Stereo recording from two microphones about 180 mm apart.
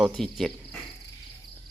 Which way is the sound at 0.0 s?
5° left (ahead or behind).